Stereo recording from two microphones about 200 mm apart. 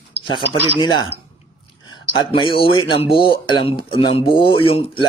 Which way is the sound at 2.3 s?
25° left (ahead or behind).